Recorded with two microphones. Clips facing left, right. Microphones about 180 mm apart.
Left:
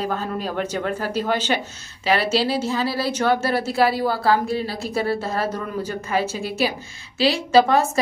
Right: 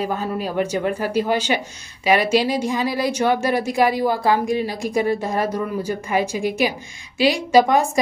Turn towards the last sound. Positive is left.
turn(degrees=-15)  # may be behind; listen again after turning